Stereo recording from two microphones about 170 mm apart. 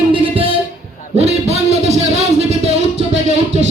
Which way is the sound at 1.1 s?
40° right (ahead or behind).